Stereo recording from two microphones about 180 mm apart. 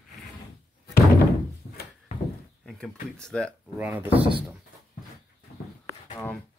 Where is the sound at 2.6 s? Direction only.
5° left (ahead or behind).